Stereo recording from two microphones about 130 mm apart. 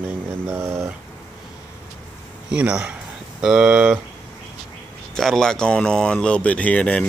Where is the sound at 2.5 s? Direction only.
10° right (ahead or behind).